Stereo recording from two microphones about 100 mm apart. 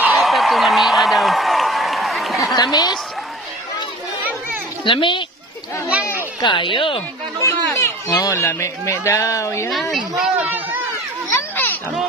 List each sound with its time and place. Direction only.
0.0 s a sound: centre (ahead or behind)
2.5 s a woman's voice: 40° left (ahead or behind)
4.8 s speech: 55° left (ahead or behind)
6.4 s speech: 55° left (ahead or behind)
7.4 s speech: 25° left (ahead or behind)
8.1 s a woman's voice: 35° left (ahead or behind)
8.5 s speech: 25° left (ahead or behind)
9.7 s a woman's voice: centre (ahead or behind)
11.5 s a sound: 20° left (ahead or behind)